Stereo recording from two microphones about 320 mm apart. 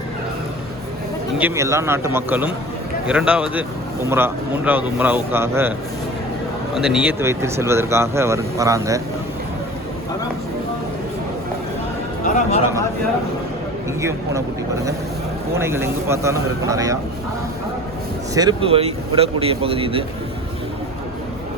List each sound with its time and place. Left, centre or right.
1.4 s speech: centre
6.7 s speech: centre
12.2 s speech: left
14.0 s speech: centre
15.5 s speech: centre
18.3 s speech: centre